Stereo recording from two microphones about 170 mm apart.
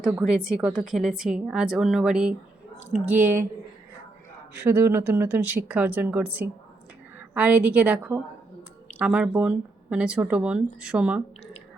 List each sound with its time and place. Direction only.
0.2 s speech: 5° right (ahead or behind)
2.7 s speech: 45° left (ahead or behind)
3.1 s speech: 10° right (ahead or behind)
4.5 s speech: 10° right (ahead or behind)